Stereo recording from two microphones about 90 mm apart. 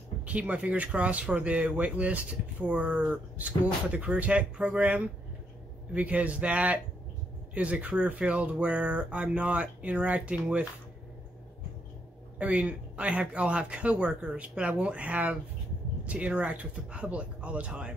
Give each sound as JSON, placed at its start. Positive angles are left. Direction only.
{"t": 0.2, "sound": "speech", "side_deg": -15}
{"t": 12.4, "sound": "speech", "side_deg": -15}